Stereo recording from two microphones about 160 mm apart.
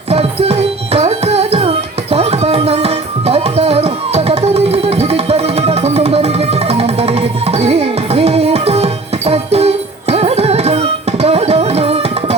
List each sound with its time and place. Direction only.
0.1 s music: 40° right (ahead or behind)